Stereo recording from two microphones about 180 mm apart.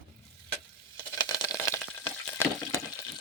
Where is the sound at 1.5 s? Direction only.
5° left (ahead or behind).